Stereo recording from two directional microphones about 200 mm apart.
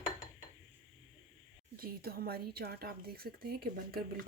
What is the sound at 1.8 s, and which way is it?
Speech, 50° right (ahead or behind).